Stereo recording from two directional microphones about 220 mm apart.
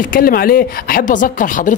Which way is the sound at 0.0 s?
40° left (ahead or behind).